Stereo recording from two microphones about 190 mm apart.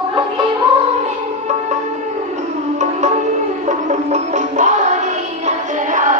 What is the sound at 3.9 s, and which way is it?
Music, 40° right (ahead or behind).